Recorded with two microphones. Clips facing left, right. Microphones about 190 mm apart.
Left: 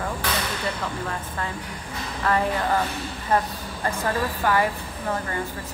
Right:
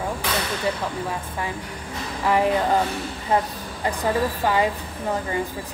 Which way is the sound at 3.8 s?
15° right (ahead or behind).